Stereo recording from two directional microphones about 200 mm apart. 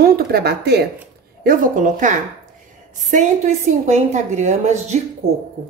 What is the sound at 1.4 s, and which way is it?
A woman's voice, 40° right (ahead or behind).